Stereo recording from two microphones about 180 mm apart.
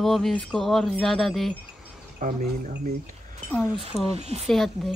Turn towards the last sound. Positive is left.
turn(degrees=0)  # may be behind; listen again after turning